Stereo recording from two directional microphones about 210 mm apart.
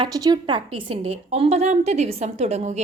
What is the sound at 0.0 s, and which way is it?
A woman's voice, 20° right (ahead or behind).